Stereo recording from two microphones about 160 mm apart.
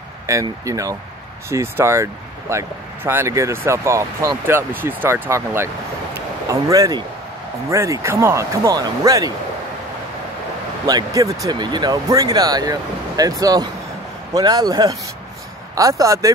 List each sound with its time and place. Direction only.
0.3 s speech: 20° right (ahead or behind)
10.9 s speech: 20° right (ahead or behind)